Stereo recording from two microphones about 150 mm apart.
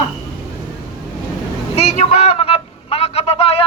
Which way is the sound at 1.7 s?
45° left (ahead or behind).